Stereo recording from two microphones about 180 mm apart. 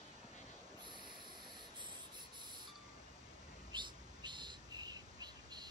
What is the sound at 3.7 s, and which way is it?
Bird, 25° right (ahead or behind).